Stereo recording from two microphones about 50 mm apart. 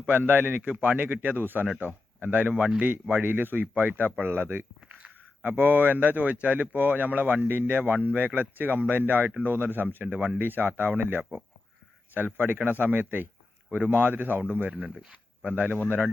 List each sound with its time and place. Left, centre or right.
0.1 s speech: right
4.2 s speech: right
4.9 s a sound: right
5.4 s speech: right
15.4 s speech: right